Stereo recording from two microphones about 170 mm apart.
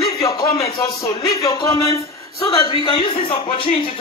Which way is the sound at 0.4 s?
25° left (ahead or behind).